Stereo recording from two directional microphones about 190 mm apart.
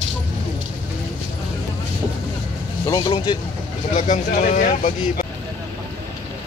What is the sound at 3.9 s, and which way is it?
Speech, 40° left (ahead or behind).